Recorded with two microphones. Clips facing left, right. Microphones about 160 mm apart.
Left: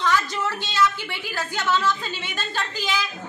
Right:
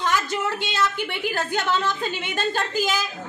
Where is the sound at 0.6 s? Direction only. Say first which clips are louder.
Left 1 dB; 55° right (ahead or behind).